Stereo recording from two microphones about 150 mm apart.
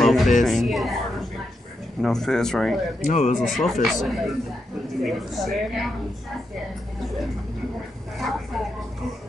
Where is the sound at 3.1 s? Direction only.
55° left (ahead or behind).